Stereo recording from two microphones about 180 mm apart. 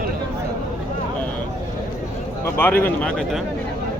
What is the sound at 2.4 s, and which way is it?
Speech, 10° left (ahead or behind).